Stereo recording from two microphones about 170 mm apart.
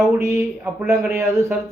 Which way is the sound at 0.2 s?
15° right (ahead or behind).